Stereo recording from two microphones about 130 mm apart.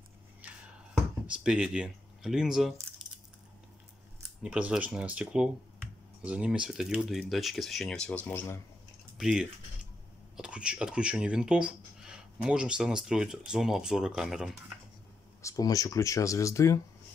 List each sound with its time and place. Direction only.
0.4 s a sound: 10° right (ahead or behind)
1.2 s speech: 10° right (ahead or behind)
4.4 s speech: 10° right (ahead or behind); by 8.5 s 15° left (ahead or behind)
9.2 s speech: 5° right (ahead or behind)
15.4 s speech: 25° left (ahead or behind)